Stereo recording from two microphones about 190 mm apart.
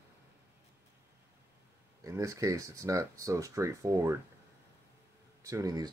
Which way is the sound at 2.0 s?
15° right (ahead or behind).